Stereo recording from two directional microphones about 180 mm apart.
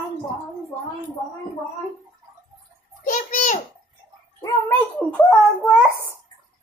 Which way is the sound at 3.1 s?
45° left (ahead or behind).